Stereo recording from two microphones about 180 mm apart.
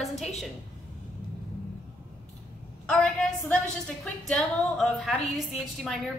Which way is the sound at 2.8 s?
5° left (ahead or behind).